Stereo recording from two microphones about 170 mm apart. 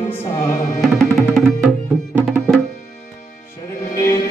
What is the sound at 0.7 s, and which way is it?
Music, centre (ahead or behind).